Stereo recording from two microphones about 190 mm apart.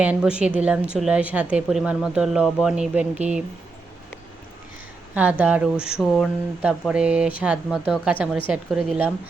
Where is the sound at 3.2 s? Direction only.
35° right (ahead or behind).